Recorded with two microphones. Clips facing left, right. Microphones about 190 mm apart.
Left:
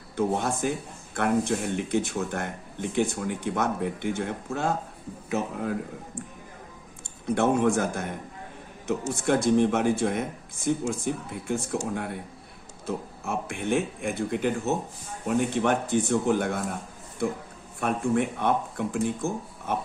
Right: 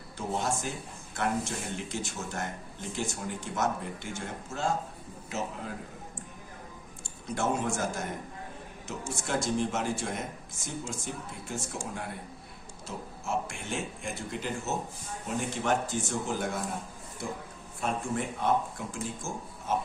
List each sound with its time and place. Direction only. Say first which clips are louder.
0.2 s speech: left 6 dB; 55° left (ahead or behind)
7.0 s speech: left 7 dB; 60° left (ahead or behind)
17.7 s speech: left 7 dB; 60° left (ahead or behind)